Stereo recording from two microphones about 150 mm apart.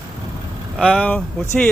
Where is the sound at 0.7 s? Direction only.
5° right (ahead or behind).